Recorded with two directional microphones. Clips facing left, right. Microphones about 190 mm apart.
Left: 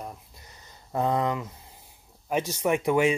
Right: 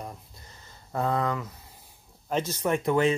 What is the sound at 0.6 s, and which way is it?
Speech, 15° left (ahead or behind).